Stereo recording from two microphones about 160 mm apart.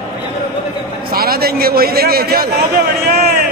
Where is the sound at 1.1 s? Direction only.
70° right (ahead or behind).